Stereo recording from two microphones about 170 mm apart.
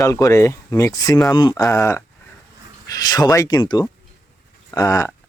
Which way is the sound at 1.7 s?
15° left (ahead or behind).